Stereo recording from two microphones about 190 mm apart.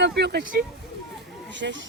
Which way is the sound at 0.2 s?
55° right (ahead or behind).